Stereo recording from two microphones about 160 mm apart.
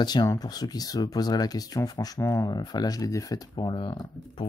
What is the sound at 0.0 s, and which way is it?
Speech, 25° left (ahead or behind).